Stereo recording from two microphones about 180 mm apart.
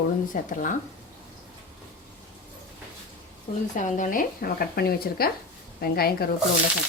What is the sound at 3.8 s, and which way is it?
Speech, 45° left (ahead or behind).